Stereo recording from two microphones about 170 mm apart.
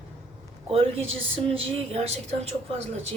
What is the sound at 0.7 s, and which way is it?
Speech, 35° right (ahead or behind).